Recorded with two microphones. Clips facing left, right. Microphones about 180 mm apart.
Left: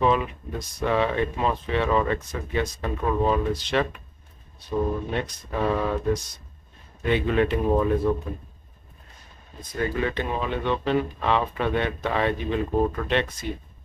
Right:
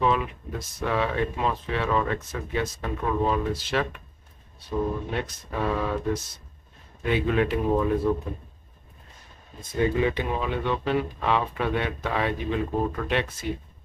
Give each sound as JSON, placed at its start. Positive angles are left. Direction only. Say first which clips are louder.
{"t": 0.0, "sound": "speech", "louder": "left 2 dB", "side_deg": 0}
{"t": 7.0, "sound": "speech", "louder": "left 2 dB", "side_deg": -5}
{"t": 9.6, "sound": "speech", "louder": "right 3 dB", "side_deg": -25}